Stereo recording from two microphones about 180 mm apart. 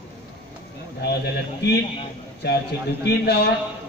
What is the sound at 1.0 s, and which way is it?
A man's voice, 65° left (ahead or behind).